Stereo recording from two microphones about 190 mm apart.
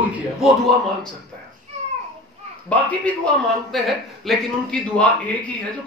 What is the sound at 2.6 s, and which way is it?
A man's voice, 5° left (ahead or behind).